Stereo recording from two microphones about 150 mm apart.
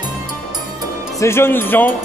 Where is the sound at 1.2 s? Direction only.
15° left (ahead or behind).